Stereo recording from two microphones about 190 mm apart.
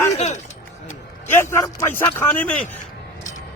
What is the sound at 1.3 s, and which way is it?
A man's voice, 15° left (ahead or behind).